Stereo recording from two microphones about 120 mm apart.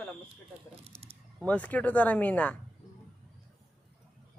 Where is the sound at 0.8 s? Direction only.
55° right (ahead or behind).